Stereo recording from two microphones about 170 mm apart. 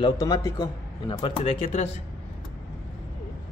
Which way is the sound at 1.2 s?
35° left (ahead or behind).